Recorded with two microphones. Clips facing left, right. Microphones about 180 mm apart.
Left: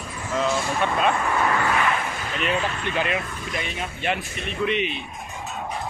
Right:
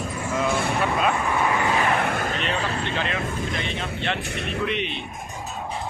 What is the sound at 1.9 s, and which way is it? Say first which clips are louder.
Vehicle: right 5 dB; 65° right (ahead or behind).